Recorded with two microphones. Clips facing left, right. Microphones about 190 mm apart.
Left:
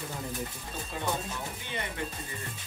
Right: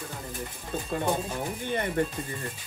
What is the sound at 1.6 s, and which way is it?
Speech, 50° right (ahead or behind).